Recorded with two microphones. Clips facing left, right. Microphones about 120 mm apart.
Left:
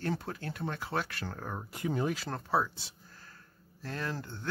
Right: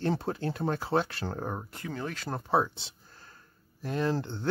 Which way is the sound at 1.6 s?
15° left (ahead or behind).